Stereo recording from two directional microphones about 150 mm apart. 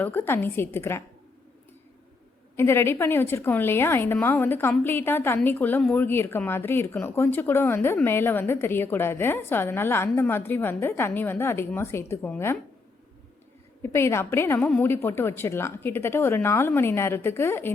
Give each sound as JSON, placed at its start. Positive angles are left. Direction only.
{"t": 0.0, "sound": "speech", "side_deg": 15}
{"t": 2.6, "sound": "speech", "side_deg": 15}
{"t": 13.8, "sound": "speech", "side_deg": 15}